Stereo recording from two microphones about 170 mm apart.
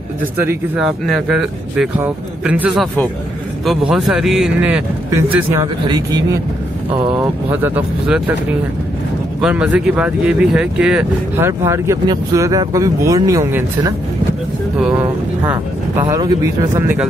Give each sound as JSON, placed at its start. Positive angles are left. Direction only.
{"t": 0.4, "sound": "speech", "side_deg": -15}
{"t": 1.0, "sound": "a man's voice", "side_deg": 0}
{"t": 7.5, "sound": "speech", "side_deg": -10}
{"t": 16.8, "sound": "speech", "side_deg": -10}